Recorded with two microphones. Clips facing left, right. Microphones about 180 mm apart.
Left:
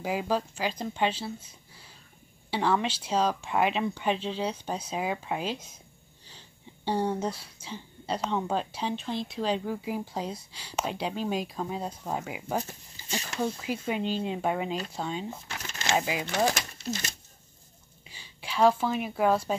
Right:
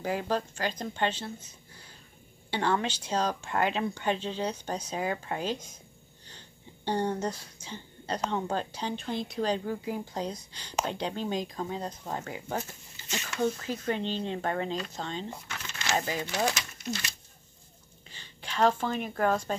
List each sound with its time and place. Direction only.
0.0 s speech: 5° left (ahead or behind)
6.2 s sniff: 5° left (ahead or behind)
7.7 s speech: centre (ahead or behind)
12.6 s speech: 35° left (ahead or behind)
13.4 s speech: 10° left (ahead or behind)
15.4 s a sound: 35° left (ahead or behind)
16.0 s speech: 10° left (ahead or behind)
18.0 s speech: 10° left (ahead or behind)